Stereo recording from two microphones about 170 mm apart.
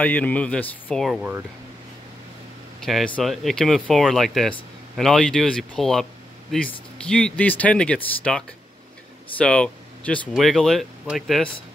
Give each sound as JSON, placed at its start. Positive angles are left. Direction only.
{"t": 0.0, "sound": "speech", "side_deg": 10}
{"t": 2.8, "sound": "speech", "side_deg": 0}